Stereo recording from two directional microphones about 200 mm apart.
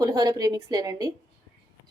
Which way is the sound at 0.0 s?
20° right (ahead or behind).